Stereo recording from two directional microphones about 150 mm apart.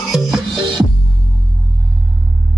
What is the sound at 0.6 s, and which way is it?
Music, 35° right (ahead or behind).